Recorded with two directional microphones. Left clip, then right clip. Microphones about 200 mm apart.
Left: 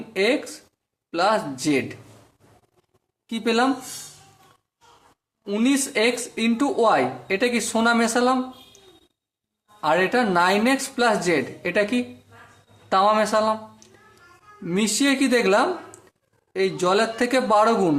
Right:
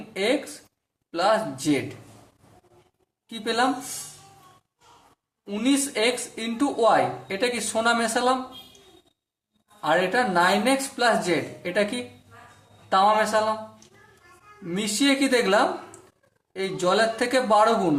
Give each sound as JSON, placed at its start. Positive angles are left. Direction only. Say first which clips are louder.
{"t": 1.1, "sound": "speech", "louder": "left 1 dB", "side_deg": 40}
{"t": 3.2, "sound": "speech", "louder": "left 3 dB", "side_deg": 40}
{"t": 5.5, "sound": "speech", "louder": "left 2 dB", "side_deg": 45}
{"t": 9.8, "sound": "speech", "louder": "left 2 dB", "side_deg": 40}
{"t": 12.9, "sound": "a man's voice", "louder": "left 1 dB", "side_deg": 45}
{"t": 14.7, "sound": "speech", "louder": "left 2 dB", "side_deg": 40}